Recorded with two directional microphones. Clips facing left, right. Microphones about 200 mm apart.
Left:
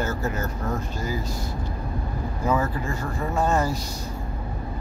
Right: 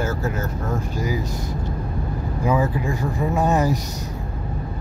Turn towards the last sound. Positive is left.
turn(degrees=-15)  # may be behind; listen again after turning